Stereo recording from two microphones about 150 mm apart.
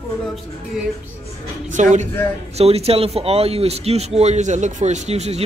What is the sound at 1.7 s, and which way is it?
Speech, 55° right (ahead or behind).